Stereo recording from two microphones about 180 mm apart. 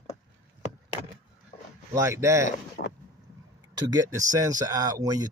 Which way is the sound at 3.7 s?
20° right (ahead or behind).